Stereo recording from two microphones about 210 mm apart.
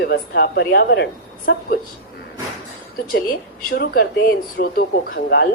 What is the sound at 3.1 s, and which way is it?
A woman's voice, 45° left (ahead or behind).